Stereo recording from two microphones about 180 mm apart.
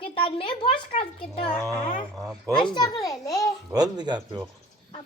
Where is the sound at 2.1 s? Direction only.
20° right (ahead or behind).